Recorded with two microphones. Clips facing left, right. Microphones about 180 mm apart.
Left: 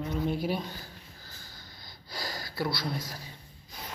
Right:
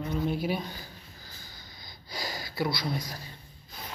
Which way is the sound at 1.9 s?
20° right (ahead or behind).